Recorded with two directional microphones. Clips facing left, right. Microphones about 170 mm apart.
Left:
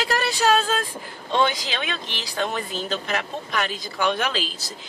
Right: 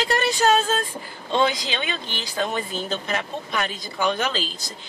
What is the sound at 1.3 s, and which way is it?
Speech, centre (ahead or behind).